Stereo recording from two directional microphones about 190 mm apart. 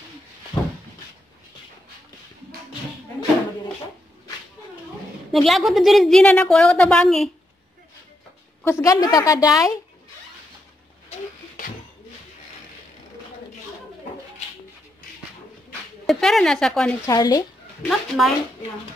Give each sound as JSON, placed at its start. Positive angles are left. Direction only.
{"t": 5.3, "sound": "a woman's voice", "side_deg": 0}
{"t": 8.6, "sound": "a woman's voice", "side_deg": 15}
{"t": 16.1, "sound": "a woman's voice", "side_deg": 0}
{"t": 17.0, "sound": "a woman's voice", "side_deg": 20}
{"t": 17.8, "sound": "speech", "side_deg": 0}